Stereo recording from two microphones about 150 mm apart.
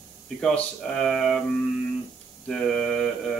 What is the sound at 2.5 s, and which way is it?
Speech, 5° left (ahead or behind).